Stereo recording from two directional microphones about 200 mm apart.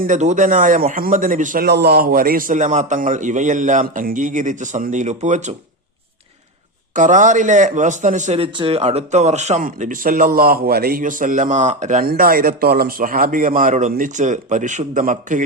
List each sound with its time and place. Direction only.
0.0 s a man's voice: 35° right (ahead or behind)
1.6 s a man's voice: 55° right (ahead or behind); by 5.5 s 35° right (ahead or behind)
6.9 s a man's voice: 40° right (ahead or behind)